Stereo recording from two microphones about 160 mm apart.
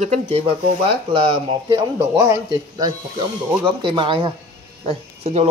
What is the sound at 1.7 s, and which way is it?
Speech, 15° right (ahead or behind).